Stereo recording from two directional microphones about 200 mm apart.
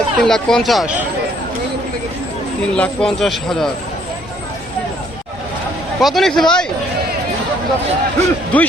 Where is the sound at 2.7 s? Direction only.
5° left (ahead or behind).